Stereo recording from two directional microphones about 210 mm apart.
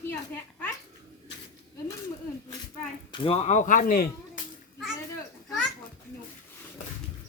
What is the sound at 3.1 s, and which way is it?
Speech, 25° left (ahead or behind).